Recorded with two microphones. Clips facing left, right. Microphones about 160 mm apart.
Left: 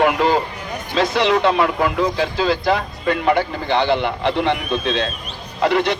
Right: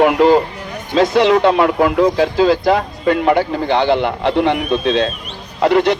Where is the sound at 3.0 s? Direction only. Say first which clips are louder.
Right 4 dB; 40° right (ahead or behind).